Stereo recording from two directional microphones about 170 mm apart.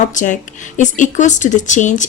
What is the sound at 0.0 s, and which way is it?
Speech, 45° left (ahead or behind).